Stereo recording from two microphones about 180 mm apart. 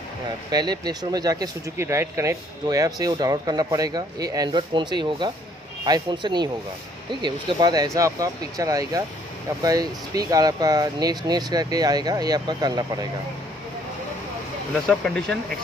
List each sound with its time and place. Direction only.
0.5 s speech: 20° right (ahead or behind)
14.9 s speech: 5° left (ahead or behind)